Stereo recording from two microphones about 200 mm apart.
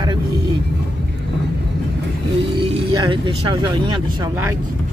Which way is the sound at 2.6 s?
25° right (ahead or behind).